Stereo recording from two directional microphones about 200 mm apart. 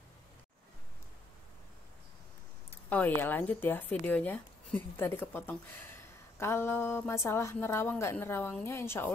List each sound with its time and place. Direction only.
2.9 s speech: 10° left (ahead or behind)